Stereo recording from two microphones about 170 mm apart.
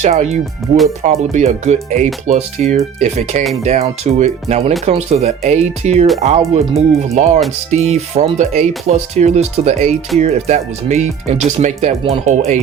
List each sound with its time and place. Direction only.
0.0 s speech: 40° right (ahead or behind)